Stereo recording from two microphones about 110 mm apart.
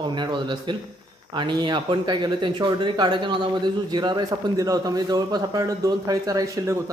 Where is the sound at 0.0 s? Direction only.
45° right (ahead or behind).